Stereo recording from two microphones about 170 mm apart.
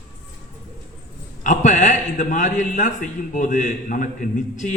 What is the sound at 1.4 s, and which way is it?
A man's voice, 45° left (ahead or behind).